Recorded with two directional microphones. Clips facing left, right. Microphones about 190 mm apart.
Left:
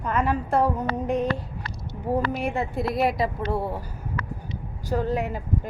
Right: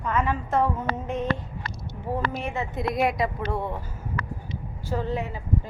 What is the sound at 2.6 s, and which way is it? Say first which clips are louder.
A woman's voice: right 1 dB; 5° left (ahead or behind).